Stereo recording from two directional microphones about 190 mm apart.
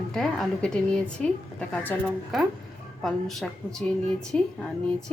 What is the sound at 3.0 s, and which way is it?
A woman's voice, centre (ahead or behind).